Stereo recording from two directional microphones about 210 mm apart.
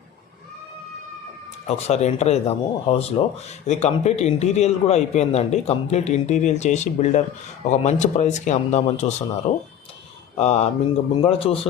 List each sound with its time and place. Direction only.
1.6 s a man's voice: 30° left (ahead or behind)